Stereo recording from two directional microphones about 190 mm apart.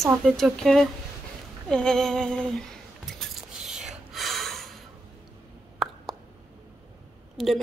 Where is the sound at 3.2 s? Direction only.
5° right (ahead or behind).